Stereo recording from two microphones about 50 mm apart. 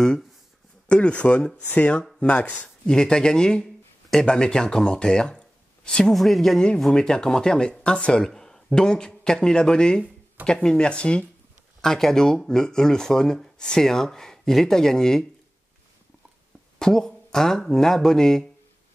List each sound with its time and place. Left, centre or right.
0.8 s speech: left
6.1 s speech: centre
6.9 s speech: centre
11.8 s speech: centre
16.7 s speech: centre